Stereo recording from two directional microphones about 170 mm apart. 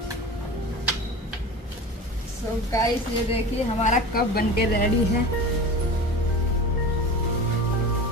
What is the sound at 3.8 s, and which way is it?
A woman's voice, 55° left (ahead or behind).